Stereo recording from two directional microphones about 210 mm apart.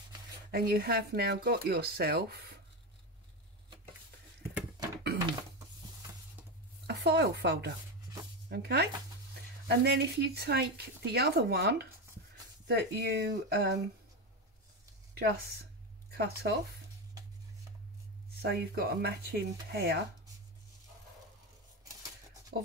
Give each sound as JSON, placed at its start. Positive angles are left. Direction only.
{"t": 0.5, "sound": "speech", "side_deg": -50}
{"t": 6.9, "sound": "speech", "side_deg": -50}
{"t": 15.1, "sound": "speech", "side_deg": -45}
{"t": 18.4, "sound": "speech", "side_deg": -50}
{"t": 22.5, "sound": "speech", "side_deg": -50}